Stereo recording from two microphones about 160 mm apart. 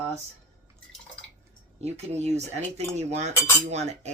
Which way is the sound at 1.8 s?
40° right (ahead or behind).